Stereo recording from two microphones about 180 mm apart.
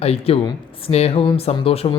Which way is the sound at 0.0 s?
35° left (ahead or behind).